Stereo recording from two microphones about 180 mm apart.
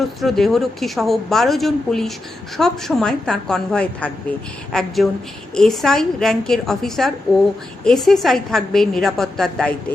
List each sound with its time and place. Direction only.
0.2 s a woman's voice: centre (ahead or behind)